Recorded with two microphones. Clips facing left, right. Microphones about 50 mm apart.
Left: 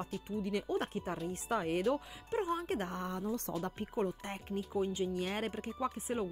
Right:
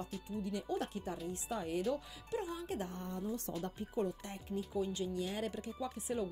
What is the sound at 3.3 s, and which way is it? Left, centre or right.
Speech, left.